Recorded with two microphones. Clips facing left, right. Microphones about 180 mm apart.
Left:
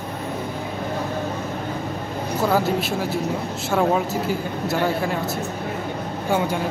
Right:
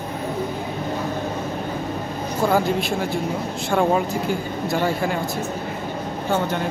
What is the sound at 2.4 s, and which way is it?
A man's voice, 5° left (ahead or behind).